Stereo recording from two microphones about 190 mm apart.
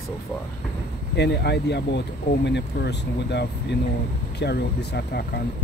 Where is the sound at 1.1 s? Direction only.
60° left (ahead or behind).